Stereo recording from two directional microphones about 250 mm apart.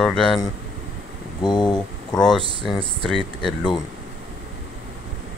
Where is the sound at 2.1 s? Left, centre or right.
Centre.